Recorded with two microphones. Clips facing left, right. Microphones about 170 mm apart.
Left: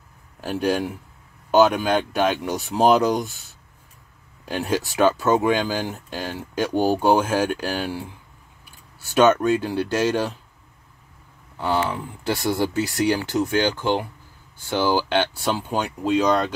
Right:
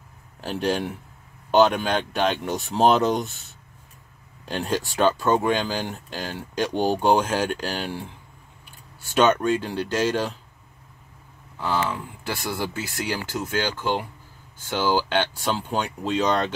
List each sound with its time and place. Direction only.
0.4 s speech: 5° left (ahead or behind)
4.5 s speech: 15° left (ahead or behind)
9.4 s speech: 15° left (ahead or behind)
11.6 s speech: 15° left (ahead or behind)